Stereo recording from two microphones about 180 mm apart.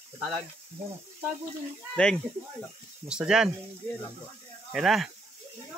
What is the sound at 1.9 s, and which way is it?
Speech, 5° left (ahead or behind).